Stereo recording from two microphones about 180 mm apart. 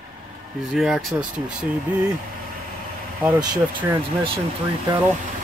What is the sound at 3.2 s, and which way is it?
Speech, 20° right (ahead or behind).